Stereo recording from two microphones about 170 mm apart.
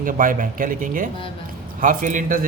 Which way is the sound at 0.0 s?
55° right (ahead or behind).